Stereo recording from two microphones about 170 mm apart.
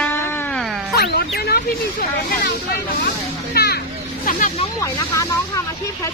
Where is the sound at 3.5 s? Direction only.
70° left (ahead or behind).